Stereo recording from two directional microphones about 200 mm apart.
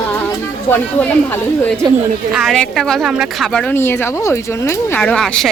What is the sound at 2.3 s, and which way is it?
A woman's voice, centre (ahead or behind).